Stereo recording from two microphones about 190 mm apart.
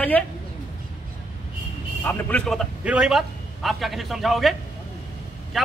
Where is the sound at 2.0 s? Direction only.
10° left (ahead or behind).